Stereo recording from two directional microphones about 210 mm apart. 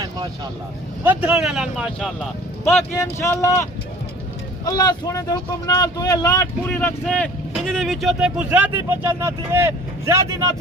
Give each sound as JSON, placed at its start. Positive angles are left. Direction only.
{"t": 1.0, "sound": "speech", "side_deg": -5}
{"t": 2.6, "sound": "speech", "side_deg": 10}